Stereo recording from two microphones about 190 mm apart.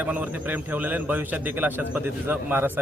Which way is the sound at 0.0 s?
10° right (ahead or behind).